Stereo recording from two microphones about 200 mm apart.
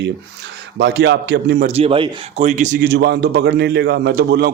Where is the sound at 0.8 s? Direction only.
60° right (ahead or behind).